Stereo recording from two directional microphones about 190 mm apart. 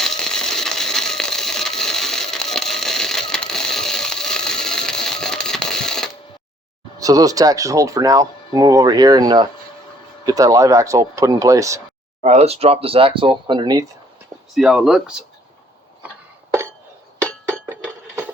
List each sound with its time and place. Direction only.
0.0 s a sound: 5° left (ahead or behind)
7.0 s speech: 20° right (ahead or behind)
12.2 s speech: 35° right (ahead or behind)
14.5 s speech: centre (ahead or behind)